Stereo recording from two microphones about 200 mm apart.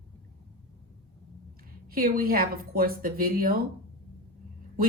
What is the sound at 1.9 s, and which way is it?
Speech, 45° right (ahead or behind).